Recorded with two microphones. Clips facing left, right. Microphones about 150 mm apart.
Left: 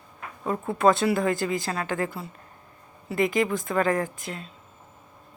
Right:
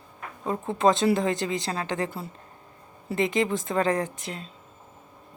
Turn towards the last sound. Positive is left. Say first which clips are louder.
# left 1 dB
turn(degrees=-25)  # may be behind; listen again after turning